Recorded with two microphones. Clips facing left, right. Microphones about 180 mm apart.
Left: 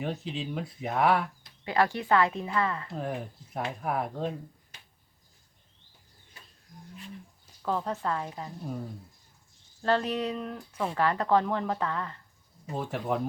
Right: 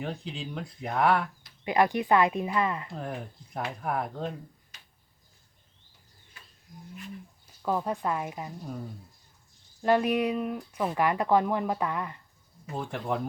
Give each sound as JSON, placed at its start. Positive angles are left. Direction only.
{"t": 0.0, "sound": "speech", "side_deg": 5}
{"t": 1.6, "sound": "speech", "side_deg": -15}
{"t": 2.9, "sound": "speech", "side_deg": 5}
{"t": 7.6, "sound": "speech", "side_deg": -10}
{"t": 9.8, "sound": "speech", "side_deg": -15}
{"t": 12.7, "sound": "speech", "side_deg": 5}